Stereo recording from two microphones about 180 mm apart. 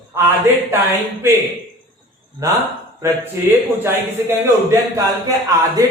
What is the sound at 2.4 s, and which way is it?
Speech, 20° right (ahead or behind).